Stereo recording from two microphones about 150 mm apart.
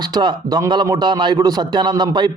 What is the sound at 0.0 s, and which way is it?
A man's voice, 30° right (ahead or behind).